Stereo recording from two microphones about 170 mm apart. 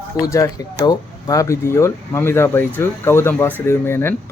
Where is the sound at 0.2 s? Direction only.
20° left (ahead or behind).